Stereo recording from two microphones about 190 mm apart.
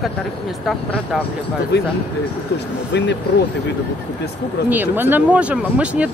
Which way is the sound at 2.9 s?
65° left (ahead or behind).